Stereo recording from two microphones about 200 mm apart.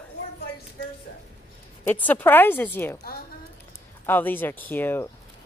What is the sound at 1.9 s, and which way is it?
Speech, 10° left (ahead or behind).